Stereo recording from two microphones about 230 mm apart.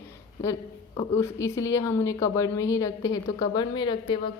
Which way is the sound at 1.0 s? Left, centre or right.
Centre.